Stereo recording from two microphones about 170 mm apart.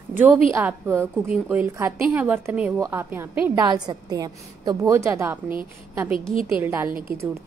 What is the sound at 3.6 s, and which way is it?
A woman's voice, 25° right (ahead or behind).